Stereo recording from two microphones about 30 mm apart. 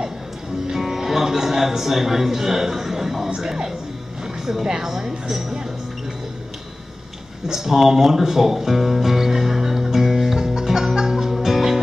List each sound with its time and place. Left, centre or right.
0.7 s speech: centre
3.3 s speech: centre
7.4 s music: centre